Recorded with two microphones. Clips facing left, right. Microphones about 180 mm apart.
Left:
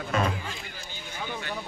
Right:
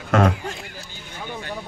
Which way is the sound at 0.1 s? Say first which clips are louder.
Right 9 dB; 90° right.